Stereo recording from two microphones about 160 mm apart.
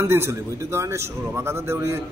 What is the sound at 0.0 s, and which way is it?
A man's voice, 15° right (ahead or behind).